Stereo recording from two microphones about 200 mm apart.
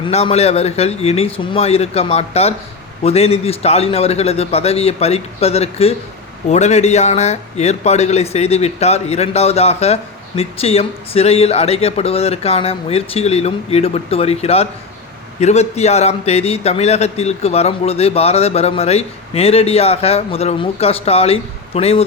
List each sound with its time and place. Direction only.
0.1 s speech: 30° left (ahead or behind)